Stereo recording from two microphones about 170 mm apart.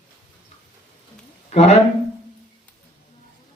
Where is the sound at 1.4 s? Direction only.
40° left (ahead or behind).